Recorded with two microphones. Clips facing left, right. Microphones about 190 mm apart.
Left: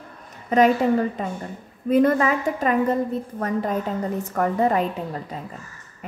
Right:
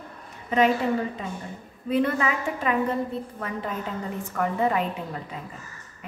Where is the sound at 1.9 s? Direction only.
45° left (ahead or behind).